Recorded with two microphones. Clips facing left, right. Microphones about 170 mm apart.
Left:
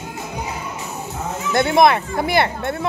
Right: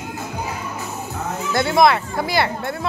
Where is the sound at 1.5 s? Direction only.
20° left (ahead or behind).